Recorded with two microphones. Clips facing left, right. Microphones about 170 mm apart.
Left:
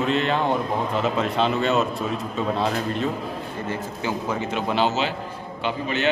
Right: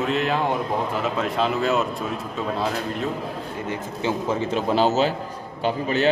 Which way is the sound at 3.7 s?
25° right (ahead or behind).